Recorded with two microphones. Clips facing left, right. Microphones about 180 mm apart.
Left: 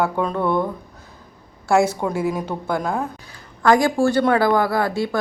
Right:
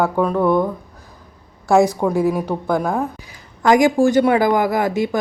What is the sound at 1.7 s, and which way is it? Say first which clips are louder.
Speech: right 3 dB; 15° right (ahead or behind).